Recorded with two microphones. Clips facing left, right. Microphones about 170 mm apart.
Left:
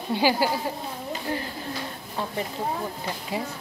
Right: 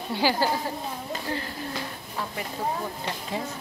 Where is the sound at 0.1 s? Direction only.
15° left (ahead or behind).